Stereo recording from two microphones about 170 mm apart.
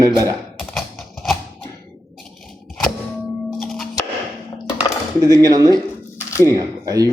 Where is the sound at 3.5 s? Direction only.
Centre (ahead or behind).